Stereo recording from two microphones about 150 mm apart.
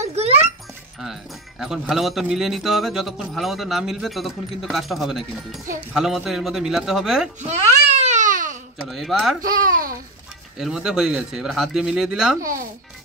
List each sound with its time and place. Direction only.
0.0 s music: 45° right (ahead or behind)
1.6 s speech: centre (ahead or behind)
7.5 s babbling: 50° right (ahead or behind)
8.8 s speech: centre (ahead or behind)
9.4 s speech: 65° right (ahead or behind)
10.6 s speech: 5° right (ahead or behind)